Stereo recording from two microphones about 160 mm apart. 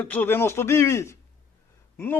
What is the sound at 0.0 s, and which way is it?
A man's voice, 10° left (ahead or behind).